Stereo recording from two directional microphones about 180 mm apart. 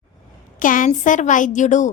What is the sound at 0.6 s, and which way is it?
A woman's voice, 45° left (ahead or behind).